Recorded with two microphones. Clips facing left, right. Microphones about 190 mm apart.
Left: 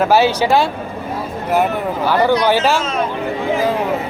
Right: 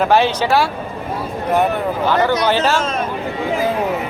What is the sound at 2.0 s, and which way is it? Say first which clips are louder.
Speech: left 2 dB; 10° left (ahead or behind).